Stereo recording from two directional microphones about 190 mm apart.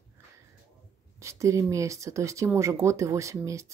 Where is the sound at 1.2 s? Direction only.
15° right (ahead or behind).